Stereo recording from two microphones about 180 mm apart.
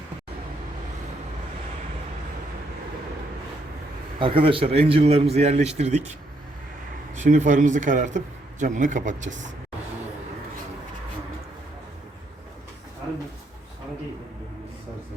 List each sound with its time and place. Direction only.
4.2 s a man's voice: 30° right (ahead or behind)
7.2 s a man's voice: 45° right (ahead or behind)